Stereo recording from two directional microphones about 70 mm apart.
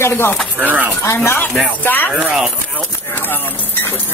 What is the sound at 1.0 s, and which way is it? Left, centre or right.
Speech, left.